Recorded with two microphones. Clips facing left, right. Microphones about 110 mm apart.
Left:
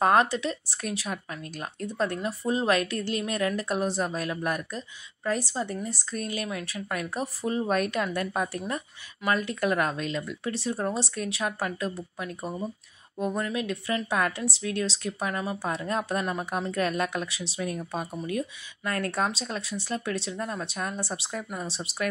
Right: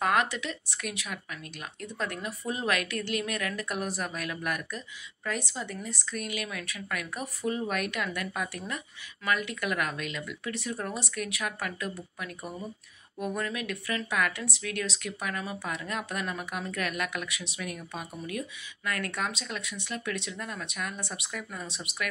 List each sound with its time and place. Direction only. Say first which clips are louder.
0.0 s speech: left 5 dB; 35° left (ahead or behind)